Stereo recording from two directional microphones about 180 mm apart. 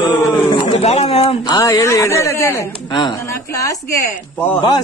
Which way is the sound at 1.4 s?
20° left (ahead or behind).